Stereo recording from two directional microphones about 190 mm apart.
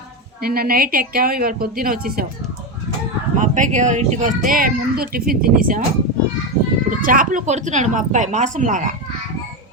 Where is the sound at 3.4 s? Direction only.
40° right (ahead or behind).